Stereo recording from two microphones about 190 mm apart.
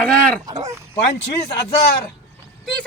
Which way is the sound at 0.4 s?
20° right (ahead or behind).